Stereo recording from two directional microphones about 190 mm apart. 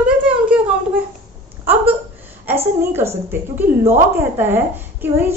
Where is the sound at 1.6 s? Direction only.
10° right (ahead or behind).